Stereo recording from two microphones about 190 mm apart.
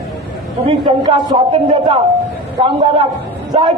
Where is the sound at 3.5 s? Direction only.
30° right (ahead or behind).